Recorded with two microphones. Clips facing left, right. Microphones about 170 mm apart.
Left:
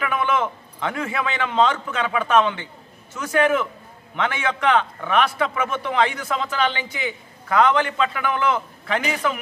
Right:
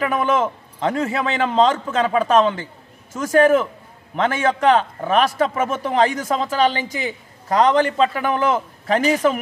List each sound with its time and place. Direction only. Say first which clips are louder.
0.0 s a man's voice: right 3 dB; 40° right (ahead or behind)